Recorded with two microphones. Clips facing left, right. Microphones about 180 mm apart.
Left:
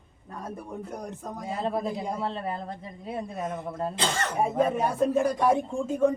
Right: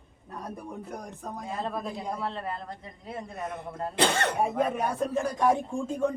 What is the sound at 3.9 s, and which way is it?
Speech, 65° right (ahead or behind).